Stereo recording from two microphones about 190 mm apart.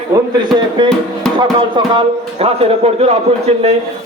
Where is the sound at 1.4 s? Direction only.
25° right (ahead or behind).